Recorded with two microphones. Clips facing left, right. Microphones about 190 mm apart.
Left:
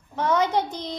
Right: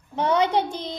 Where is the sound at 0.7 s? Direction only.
25° right (ahead or behind).